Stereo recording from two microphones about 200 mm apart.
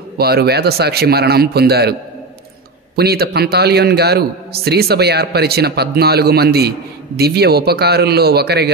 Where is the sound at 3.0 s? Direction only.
50° right (ahead or behind).